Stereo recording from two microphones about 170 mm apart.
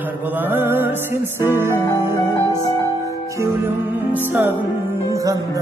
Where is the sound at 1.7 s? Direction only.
20° left (ahead or behind).